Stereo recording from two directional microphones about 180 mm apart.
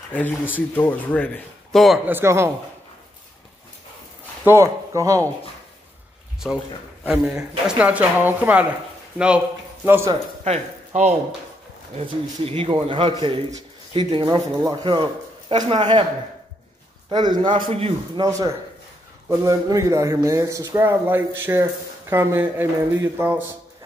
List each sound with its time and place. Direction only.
0.1 s speech: 10° left (ahead or behind)
2.0 s speech: 15° right (ahead or behind)
4.5 s speech: 15° right (ahead or behind)
6.4 s a man's voice: 5° left (ahead or behind)
9.8 s speech: 15° right (ahead or behind)
10.4 s speech: 40° right (ahead or behind)
17.1 s speech: 25° right (ahead or behind)
18.2 s speech: 20° right (ahead or behind)